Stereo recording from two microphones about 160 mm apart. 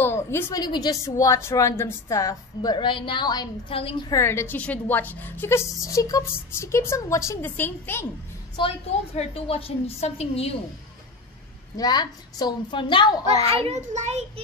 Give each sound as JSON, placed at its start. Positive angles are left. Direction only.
{"t": 0.0, "sound": "a woman's voice", "side_deg": 15}
{"t": 4.1, "sound": "a woman's voice", "side_deg": 15}
{"t": 8.5, "sound": "a woman's voice", "side_deg": 35}
{"t": 11.7, "sound": "a woman's voice", "side_deg": 25}
{"t": 13.3, "sound": "a child's voice", "side_deg": -40}